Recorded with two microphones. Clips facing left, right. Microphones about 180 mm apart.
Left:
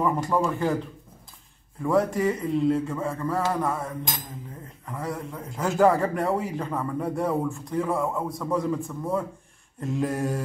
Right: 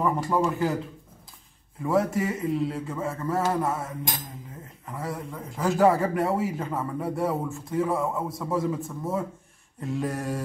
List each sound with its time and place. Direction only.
0.0 s a man's voice: centre (ahead or behind)
1.9 s a man's voice: 5° right (ahead or behind)
3.3 s mantra: 25° right (ahead or behind)
5.0 s a man's voice: centre (ahead or behind)